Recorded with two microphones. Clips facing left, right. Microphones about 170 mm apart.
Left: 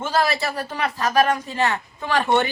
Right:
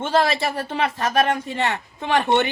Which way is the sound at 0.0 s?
25° right (ahead or behind).